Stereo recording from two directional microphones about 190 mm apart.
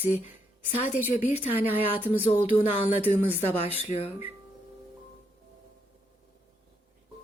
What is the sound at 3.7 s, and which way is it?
Speech, 30° left (ahead or behind).